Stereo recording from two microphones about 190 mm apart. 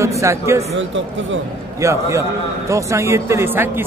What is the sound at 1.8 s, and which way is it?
A man's voice, 15° right (ahead or behind).